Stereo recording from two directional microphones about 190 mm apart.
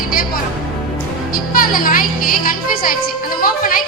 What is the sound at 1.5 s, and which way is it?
A woman's voice, 50° left (ahead or behind).